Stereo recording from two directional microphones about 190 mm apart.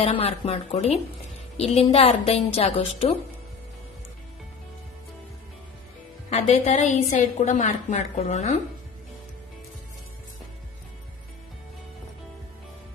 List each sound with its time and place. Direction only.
0.0 s a woman's voice: 30° left (ahead or behind)
6.3 s a woman's voice: 35° left (ahead or behind)